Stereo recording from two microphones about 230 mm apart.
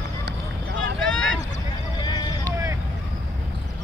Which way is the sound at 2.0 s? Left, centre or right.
Centre.